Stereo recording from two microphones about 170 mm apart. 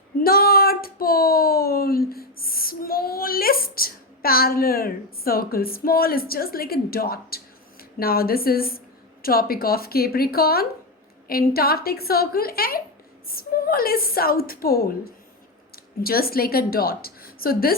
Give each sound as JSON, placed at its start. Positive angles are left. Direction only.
{"t": 0.2, "sound": "a woman's voice", "side_deg": 60}